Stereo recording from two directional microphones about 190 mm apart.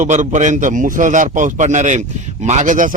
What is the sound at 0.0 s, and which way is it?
A man's voice, 40° right (ahead or behind).